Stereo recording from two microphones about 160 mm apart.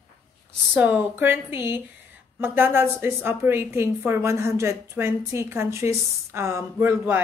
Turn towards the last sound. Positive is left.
turn(degrees=-15)  # may be behind; listen again after turning